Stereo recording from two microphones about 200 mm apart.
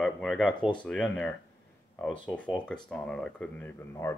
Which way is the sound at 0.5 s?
25° left (ahead or behind).